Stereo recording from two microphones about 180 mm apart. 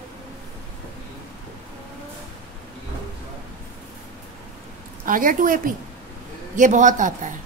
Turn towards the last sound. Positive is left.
turn(degrees=-45)  # may be behind; listen again after turning